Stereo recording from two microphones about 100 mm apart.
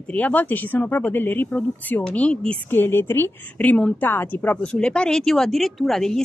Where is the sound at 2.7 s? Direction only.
20° left (ahead or behind).